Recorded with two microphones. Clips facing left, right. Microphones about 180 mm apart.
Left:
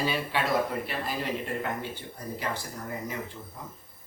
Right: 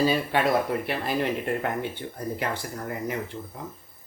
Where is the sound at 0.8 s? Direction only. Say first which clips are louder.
Right 5 dB; 65° right (ahead or behind).